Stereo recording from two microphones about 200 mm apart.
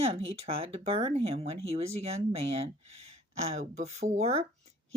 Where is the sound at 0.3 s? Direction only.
30° right (ahead or behind).